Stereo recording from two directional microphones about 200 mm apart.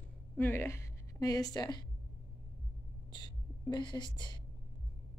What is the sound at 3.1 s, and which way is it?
A woman's voice, 20° left (ahead or behind).